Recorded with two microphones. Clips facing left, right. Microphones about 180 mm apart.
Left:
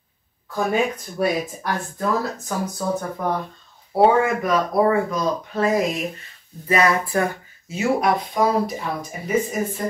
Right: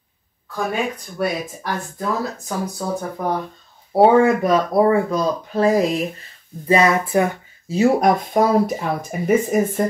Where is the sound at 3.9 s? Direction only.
30° right (ahead or behind).